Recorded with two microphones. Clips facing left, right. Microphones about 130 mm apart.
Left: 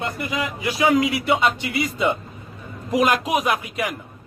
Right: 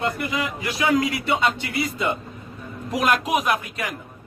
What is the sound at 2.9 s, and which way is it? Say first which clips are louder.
Speech: left 2 dB; centre (ahead or behind).